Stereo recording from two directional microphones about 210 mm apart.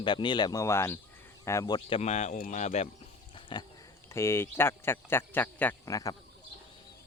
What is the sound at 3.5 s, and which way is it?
Speech, 20° left (ahead or behind).